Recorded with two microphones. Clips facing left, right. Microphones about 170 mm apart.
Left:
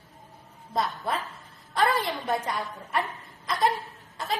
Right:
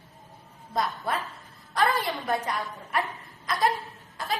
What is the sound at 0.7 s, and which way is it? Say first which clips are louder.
Speech: even; centre (ahead or behind).